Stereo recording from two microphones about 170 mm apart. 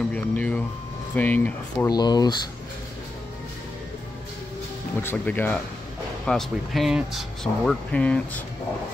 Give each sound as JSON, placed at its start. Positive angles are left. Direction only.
{"t": 0.1, "sound": "speech", "side_deg": 10}
{"t": 1.9, "sound": "speech", "side_deg": 25}
{"t": 5.0, "sound": "speech", "side_deg": 10}